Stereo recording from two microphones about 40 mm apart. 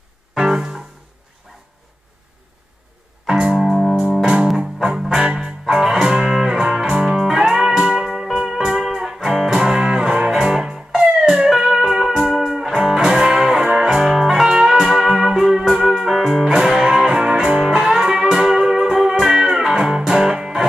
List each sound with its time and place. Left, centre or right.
0.4 s music: centre
3.3 s music: centre
5.7 s music: centre
14.0 s music: centre